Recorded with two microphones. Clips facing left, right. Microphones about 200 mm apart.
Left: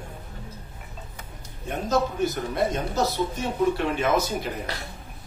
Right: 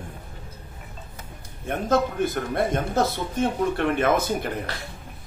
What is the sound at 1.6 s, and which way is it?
Speech, 55° right (ahead or behind).